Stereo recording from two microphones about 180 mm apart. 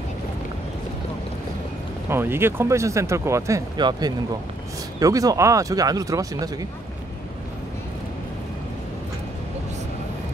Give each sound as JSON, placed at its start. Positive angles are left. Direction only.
{"t": 2.0, "sound": "speech", "side_deg": -15}